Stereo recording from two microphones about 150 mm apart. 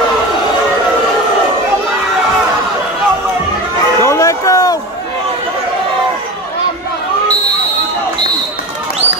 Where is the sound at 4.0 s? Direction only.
20° left (ahead or behind).